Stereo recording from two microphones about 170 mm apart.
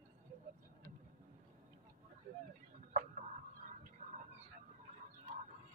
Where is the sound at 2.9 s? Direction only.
45° right (ahead or behind).